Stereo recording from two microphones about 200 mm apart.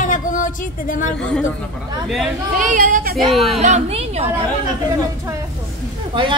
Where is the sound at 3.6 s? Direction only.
35° right (ahead or behind).